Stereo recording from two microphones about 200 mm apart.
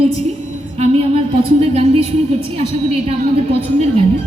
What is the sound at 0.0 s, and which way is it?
A woman's voice, 30° right (ahead or behind).